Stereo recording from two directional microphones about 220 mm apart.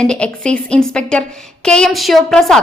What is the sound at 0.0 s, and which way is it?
A woman's voice, 5° left (ahead or behind).